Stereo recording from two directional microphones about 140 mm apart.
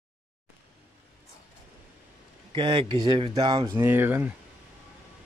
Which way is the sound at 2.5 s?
35° right (ahead or behind).